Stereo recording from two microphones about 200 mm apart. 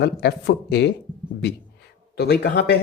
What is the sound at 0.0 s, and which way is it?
Speech, 55° left (ahead or behind).